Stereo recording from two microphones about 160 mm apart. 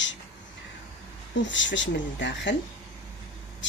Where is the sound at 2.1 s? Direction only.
90° left.